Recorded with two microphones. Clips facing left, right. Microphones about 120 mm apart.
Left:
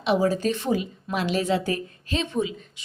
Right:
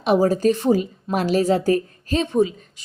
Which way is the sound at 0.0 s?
45° right (ahead or behind).